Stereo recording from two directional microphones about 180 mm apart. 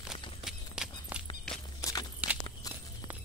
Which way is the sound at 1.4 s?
Centre (ahead or behind).